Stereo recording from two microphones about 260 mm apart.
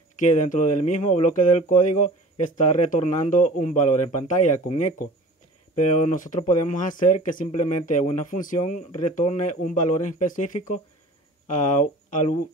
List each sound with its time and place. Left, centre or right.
0.2 s speech: left